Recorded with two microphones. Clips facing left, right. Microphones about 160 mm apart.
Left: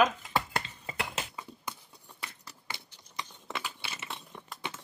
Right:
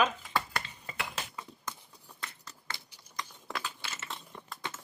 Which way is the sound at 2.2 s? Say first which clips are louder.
Even; 10° left (ahead or behind).